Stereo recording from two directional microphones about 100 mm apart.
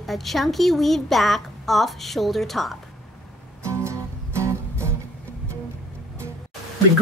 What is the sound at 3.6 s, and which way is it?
Music, 30° right (ahead or behind).